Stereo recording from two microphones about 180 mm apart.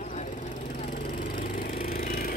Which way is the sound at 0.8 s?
50° left (ahead or behind).